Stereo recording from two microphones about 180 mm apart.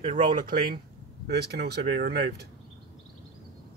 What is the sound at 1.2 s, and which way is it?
Speech, 65° right (ahead or behind).